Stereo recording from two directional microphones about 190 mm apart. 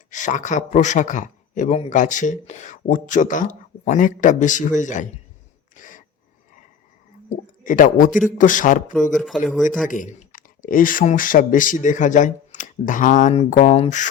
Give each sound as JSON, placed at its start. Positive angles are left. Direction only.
{"t": 0.1, "sound": "speech", "side_deg": 40}
{"t": 5.7, "sound": "a sound", "side_deg": 45}
{"t": 7.3, "sound": "speech", "side_deg": 45}
{"t": 9.1, "sound": "speech", "side_deg": 0}
{"t": 9.8, "sound": "speech", "side_deg": 45}